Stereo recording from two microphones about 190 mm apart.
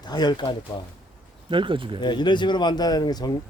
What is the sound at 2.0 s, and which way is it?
Speech, 25° left (ahead or behind).